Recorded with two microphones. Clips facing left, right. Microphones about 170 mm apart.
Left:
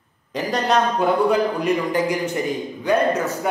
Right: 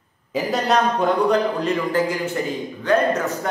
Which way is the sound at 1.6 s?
15° left (ahead or behind).